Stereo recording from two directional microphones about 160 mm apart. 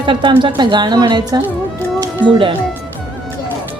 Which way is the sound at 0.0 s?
30° right (ahead or behind).